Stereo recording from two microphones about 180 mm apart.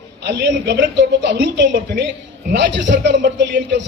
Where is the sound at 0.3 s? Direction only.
70° right (ahead or behind).